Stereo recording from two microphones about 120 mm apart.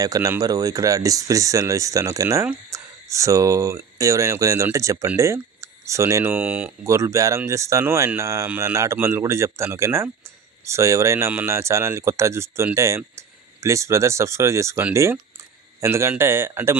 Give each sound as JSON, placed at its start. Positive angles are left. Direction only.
{"t": 0.0, "sound": "speech", "side_deg": -30}
{"t": 6.8, "sound": "speech", "side_deg": -25}